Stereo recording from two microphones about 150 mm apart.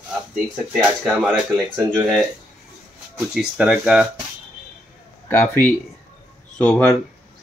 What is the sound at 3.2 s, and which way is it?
Speech, 5° right (ahead or behind).